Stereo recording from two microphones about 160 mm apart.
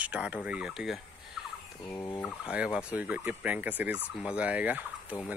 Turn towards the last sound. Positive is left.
turn(degrees=-10)  # may be behind; listen again after turning